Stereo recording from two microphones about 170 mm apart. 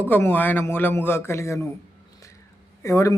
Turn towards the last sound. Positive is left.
turn(degrees=20)  # may be behind; listen again after turning